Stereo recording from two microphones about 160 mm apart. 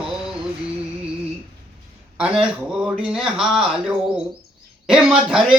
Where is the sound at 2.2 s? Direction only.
5° right (ahead or behind).